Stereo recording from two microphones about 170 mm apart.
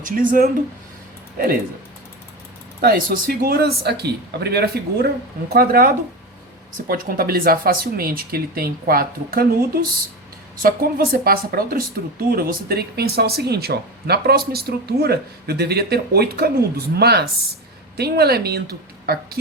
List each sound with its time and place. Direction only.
0.0 s speech: 55° right (ahead or behind)
2.8 s speech: 65° right (ahead or behind)
10.6 s speech: 60° right (ahead or behind)